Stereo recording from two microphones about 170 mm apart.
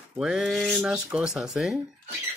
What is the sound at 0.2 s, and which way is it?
Speech, 5° right (ahead or behind).